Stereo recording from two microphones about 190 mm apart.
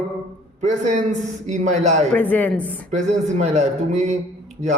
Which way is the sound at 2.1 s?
10° left (ahead or behind).